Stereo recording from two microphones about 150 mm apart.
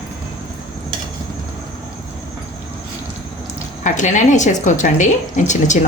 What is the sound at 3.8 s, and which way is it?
Speech, 55° left (ahead or behind).